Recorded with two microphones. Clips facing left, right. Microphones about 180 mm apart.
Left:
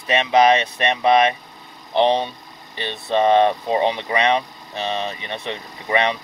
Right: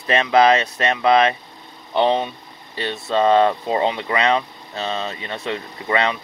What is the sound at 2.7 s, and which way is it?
Speech, 20° left (ahead or behind).